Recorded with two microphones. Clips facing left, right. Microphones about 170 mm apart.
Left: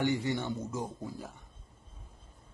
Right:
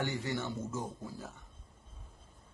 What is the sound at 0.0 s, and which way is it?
Speech, 15° left (ahead or behind).